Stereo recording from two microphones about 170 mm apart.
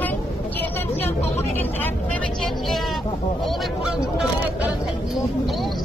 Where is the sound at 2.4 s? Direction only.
Centre (ahead or behind).